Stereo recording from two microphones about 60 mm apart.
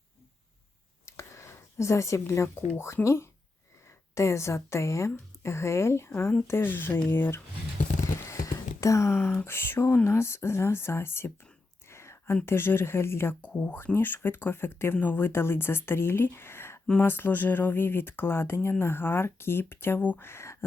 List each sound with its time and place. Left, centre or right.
1.0 s speech: left
6.5 s speech: left
8.4 s a sound: left
9.4 s speech: left
11.9 s whispering: left
12.5 s speech: left
13.6 s speech: left